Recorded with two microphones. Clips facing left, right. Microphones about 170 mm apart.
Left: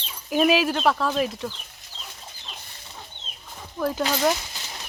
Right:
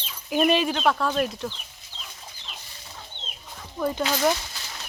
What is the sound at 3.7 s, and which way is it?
Speech, centre (ahead or behind).